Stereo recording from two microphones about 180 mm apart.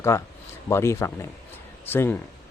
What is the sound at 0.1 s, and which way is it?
Speech, 20° left (ahead or behind).